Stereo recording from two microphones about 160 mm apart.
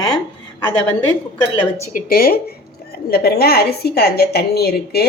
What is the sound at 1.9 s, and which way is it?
A woman's voice, 65° left (ahead or behind).